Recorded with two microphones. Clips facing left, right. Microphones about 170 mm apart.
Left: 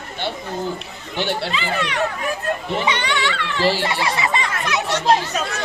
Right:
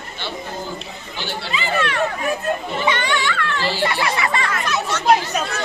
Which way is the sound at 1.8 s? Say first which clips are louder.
Right 5 dB; 15° left (ahead or behind).